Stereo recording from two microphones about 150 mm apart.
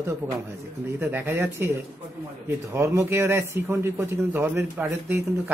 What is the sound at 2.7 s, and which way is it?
A man's voice, 15° right (ahead or behind).